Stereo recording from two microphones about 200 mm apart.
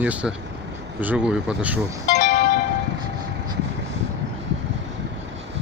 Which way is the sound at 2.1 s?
35° left (ahead or behind).